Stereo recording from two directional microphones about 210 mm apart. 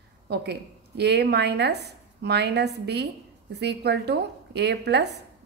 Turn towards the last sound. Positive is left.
turn(degrees=-50)  # may be behind; listen again after turning